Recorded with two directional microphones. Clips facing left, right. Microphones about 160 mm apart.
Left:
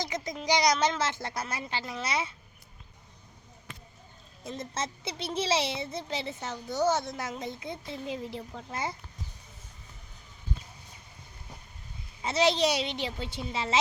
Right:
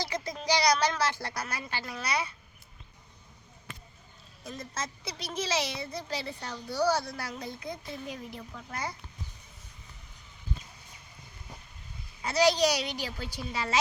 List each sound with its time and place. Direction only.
0.0 s a child's voice: 20° left (ahead or behind)
4.4 s a child's voice: 25° left (ahead or behind)
12.2 s a child's voice: 25° left (ahead or behind)